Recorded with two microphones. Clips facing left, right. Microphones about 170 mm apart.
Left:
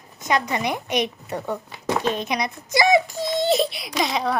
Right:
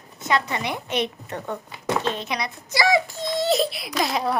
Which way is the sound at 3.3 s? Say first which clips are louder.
Left 1 dB; centre (ahead or behind).